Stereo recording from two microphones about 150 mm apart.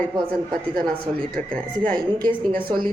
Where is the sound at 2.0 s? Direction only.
30° right (ahead or behind).